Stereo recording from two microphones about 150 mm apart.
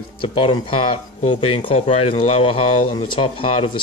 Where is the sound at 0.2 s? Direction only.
35° left (ahead or behind).